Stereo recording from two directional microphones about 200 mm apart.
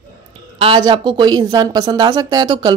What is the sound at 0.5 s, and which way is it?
A woman's voice, 25° right (ahead or behind).